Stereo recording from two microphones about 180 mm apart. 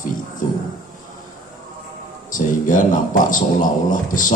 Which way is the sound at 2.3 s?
45° left (ahead or behind).